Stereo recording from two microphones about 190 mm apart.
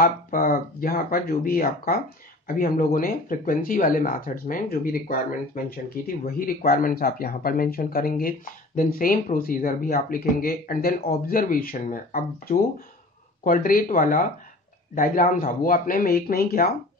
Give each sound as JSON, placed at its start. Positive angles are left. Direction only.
{"t": 0.0, "sound": "speech", "side_deg": 50}